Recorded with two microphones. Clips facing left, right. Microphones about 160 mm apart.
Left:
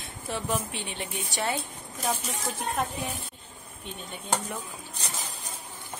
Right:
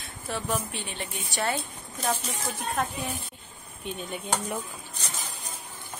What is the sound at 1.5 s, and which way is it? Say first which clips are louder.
Speech: even; 5° left (ahead or behind).